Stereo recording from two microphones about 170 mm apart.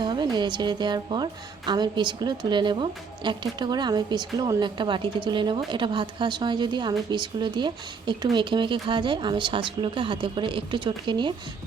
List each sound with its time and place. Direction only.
0.0 s a woman's voice: 25° right (ahead or behind)